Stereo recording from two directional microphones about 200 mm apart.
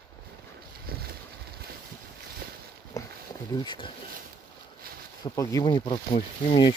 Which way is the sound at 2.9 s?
20° left (ahead or behind).